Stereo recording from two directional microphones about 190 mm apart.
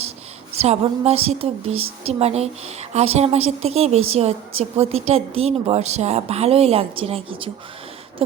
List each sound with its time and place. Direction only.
0.5 s a woman's voice: 35° right (ahead or behind)